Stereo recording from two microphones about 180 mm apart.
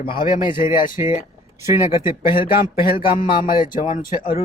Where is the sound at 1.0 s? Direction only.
15° right (ahead or behind).